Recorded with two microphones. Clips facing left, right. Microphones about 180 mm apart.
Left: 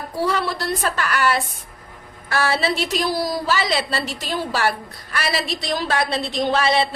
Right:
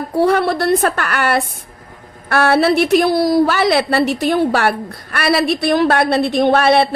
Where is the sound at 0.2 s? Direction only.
60° right (ahead or behind).